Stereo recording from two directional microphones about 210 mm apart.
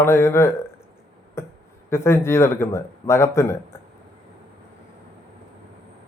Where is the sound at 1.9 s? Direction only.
10° left (ahead or behind).